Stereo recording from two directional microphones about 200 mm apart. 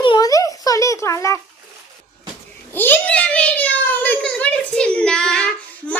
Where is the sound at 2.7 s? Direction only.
10° left (ahead or behind).